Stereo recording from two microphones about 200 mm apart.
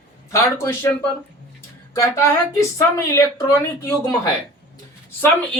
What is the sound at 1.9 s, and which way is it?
Speech, 15° left (ahead or behind).